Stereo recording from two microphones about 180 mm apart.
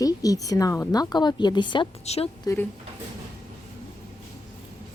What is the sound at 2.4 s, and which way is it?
Speech, 15° left (ahead or behind).